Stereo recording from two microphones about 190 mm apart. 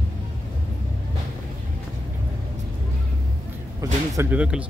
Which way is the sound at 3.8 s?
15° right (ahead or behind).